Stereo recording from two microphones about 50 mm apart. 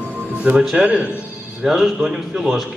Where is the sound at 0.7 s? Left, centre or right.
Centre.